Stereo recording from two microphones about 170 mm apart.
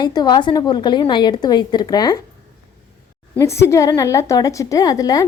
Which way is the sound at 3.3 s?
15° left (ahead or behind).